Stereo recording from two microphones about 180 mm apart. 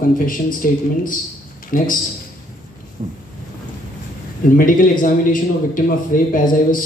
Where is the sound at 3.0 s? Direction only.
45° right (ahead or behind).